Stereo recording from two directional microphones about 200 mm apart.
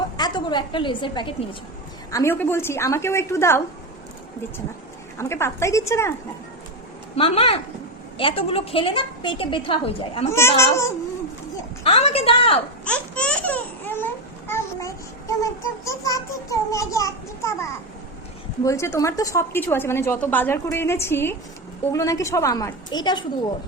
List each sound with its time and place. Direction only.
0.2 s a woman's voice: 20° left (ahead or behind)
5.1 s a woman's voice: 15° left (ahead or behind)
7.2 s a woman's voice: 25° left (ahead or behind)
10.3 s a woman's voice: 15° left (ahead or behind)
11.8 s a woman's voice: 30° left (ahead or behind)
12.8 s speech: 5° left (ahead or behind)
18.6 s a woman's voice: 15° left (ahead or behind)